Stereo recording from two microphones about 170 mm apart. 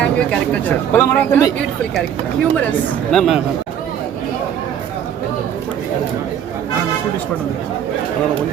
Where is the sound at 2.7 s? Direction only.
5° left (ahead or behind).